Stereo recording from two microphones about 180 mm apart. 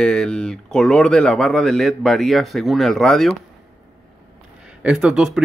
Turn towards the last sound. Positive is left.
turn(degrees=-5)  # may be behind; listen again after turning